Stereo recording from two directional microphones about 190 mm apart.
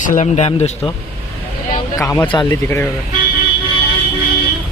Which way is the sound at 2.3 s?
20° left (ahead or behind).